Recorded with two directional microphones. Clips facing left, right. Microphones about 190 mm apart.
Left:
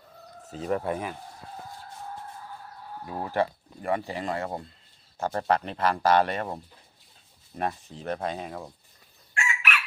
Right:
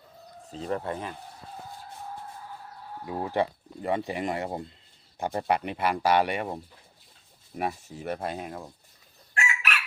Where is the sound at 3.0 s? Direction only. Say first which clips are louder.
Even; 20° right (ahead or behind).